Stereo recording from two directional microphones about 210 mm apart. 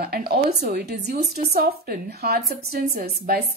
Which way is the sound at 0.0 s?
45° right (ahead or behind).